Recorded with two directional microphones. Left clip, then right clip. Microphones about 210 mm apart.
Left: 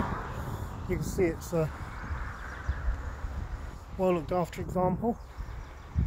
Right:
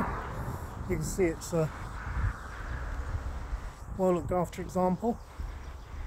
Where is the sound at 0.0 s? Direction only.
55° left (ahead or behind).